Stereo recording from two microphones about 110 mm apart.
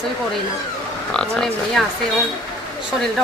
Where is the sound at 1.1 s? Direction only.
5° left (ahead or behind).